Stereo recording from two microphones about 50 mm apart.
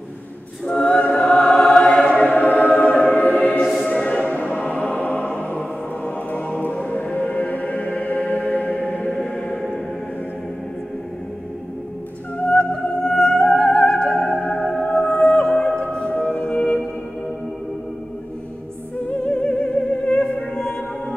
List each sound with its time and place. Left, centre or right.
0.8 s music: left
1.2 s music: centre
2.0 s choir: centre
2.2 s choir: left
3.1 s music: left
3.6 s music: centre
3.9 s music: left
9.1 s music: centre
13.0 s music: centre
19.0 s music: left